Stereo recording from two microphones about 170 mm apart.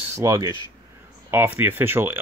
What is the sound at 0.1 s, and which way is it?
Speech, 15° right (ahead or behind).